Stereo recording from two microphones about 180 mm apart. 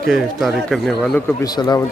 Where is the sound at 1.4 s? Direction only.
20° left (ahead or behind).